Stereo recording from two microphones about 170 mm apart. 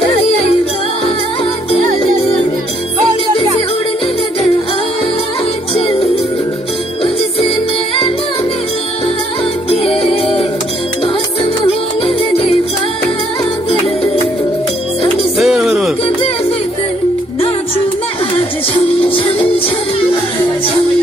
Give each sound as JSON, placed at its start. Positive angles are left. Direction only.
{"t": 7.3, "sound": "music", "side_deg": 35}
{"t": 9.7, "sound": "music", "side_deg": 35}
{"t": 15.3, "sound": "a sound", "side_deg": 0}
{"t": 19.0, "sound": "music", "side_deg": 30}